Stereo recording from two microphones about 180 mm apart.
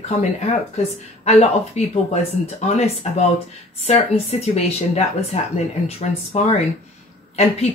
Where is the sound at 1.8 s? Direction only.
40° left (ahead or behind).